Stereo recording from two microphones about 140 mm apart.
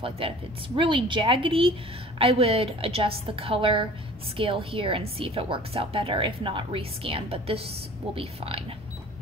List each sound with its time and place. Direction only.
0.2 s a woman's voice: 40° right (ahead or behind)